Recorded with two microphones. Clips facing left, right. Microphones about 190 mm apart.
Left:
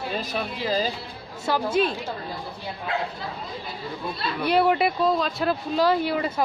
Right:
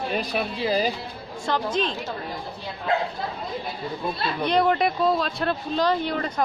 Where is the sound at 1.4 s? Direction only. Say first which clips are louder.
Left 2 dB; 10° left (ahead or behind).